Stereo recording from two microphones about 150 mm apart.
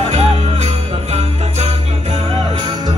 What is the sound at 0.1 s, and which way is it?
Jingle bell, 50° right (ahead or behind).